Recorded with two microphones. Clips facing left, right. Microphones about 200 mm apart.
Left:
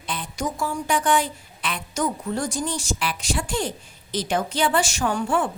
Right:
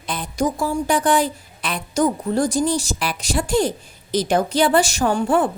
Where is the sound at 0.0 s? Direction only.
40° right (ahead or behind).